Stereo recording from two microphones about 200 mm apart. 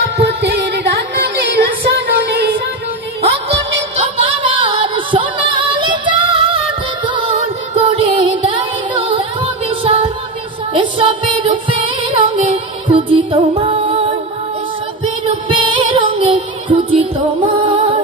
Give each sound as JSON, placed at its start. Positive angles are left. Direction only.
{"t": 0.2, "sound": "music", "side_deg": -50}
{"t": 3.4, "sound": "music", "side_deg": -30}
{"t": 7.7, "sound": "music", "side_deg": -30}
{"t": 15.2, "sound": "music", "side_deg": -25}